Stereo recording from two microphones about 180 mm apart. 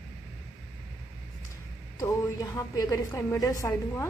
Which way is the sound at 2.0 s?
20° left (ahead or behind).